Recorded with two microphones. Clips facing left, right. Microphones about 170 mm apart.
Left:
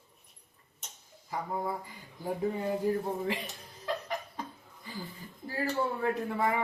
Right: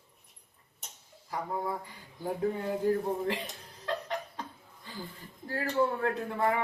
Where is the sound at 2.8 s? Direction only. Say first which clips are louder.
Right 2 dB; 15° left (ahead or behind).